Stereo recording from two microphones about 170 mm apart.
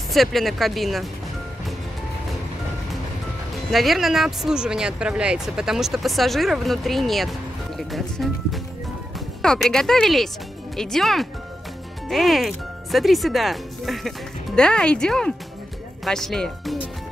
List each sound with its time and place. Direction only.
0.1 s speech: centre (ahead or behind)
3.7 s speech: centre (ahead or behind)